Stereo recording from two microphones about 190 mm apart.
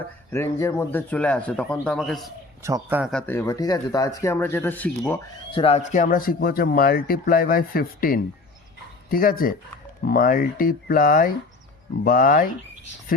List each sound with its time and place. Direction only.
0.3 s speech: 15° left (ahead or behind)
2.6 s speech: 10° right (ahead or behind)
3.1 s speech: 5° left (ahead or behind)
5.5 s speech: 30° left (ahead or behind); by 12.5 s 45° left (ahead or behind)